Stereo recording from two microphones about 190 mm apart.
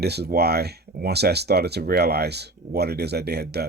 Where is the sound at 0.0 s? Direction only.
60° right (ahead or behind).